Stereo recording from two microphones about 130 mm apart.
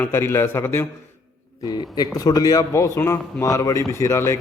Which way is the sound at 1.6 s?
30° left (ahead or behind).